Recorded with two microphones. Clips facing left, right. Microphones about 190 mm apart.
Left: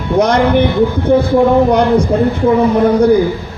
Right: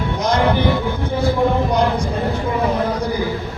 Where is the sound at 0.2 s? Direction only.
65° left (ahead or behind).